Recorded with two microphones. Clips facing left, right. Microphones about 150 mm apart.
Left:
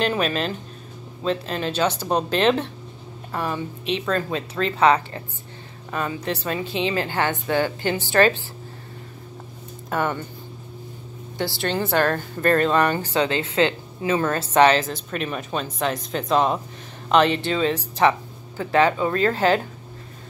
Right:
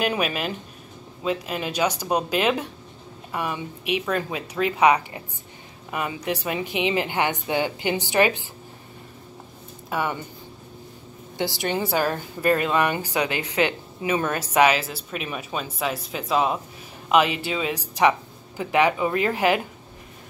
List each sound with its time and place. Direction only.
0.0 s a woman's voice: 10° right (ahead or behind)
9.8 s speech: 10° right (ahead or behind)
11.3 s a woman's voice: 15° right (ahead or behind)